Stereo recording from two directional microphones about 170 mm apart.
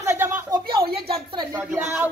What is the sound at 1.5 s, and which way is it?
Speech, 15° right (ahead or behind).